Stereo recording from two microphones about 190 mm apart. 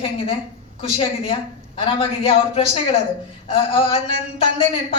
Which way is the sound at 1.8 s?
30° left (ahead or behind).